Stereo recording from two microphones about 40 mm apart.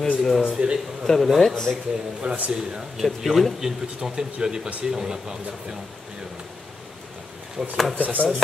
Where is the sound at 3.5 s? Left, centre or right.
Centre.